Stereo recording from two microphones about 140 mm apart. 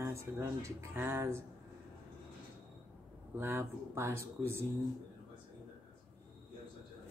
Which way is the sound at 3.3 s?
15° right (ahead or behind).